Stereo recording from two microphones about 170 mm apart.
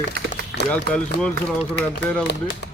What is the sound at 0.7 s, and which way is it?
Speech, 5° left (ahead or behind).